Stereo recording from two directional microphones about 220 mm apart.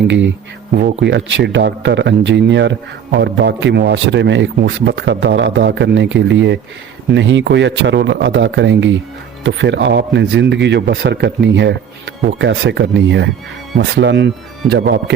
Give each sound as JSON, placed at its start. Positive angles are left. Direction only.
{"t": 0.1, "sound": "speech", "side_deg": -55}